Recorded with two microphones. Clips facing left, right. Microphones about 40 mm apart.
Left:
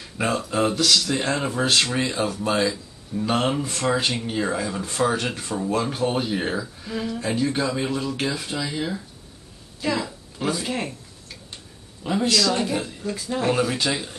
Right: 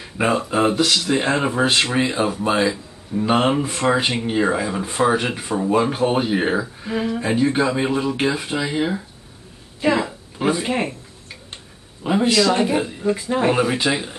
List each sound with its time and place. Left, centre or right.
0.0 s speech: right
9.8 s a sound: right
12.0 s speech: right